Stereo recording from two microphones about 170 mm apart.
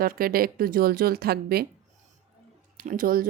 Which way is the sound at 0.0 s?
60° right (ahead or behind).